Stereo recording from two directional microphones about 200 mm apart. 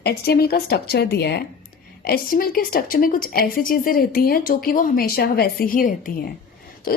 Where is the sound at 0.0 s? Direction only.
50° left (ahead or behind).